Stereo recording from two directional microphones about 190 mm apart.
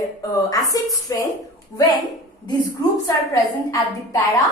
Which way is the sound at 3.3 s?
15° left (ahead or behind).